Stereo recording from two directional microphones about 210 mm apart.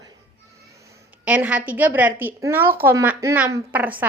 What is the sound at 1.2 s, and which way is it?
A woman's voice, 5° right (ahead or behind).